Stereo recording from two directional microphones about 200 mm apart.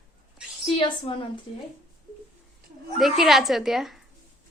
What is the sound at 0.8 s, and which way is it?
Speech, 30° left (ahead or behind).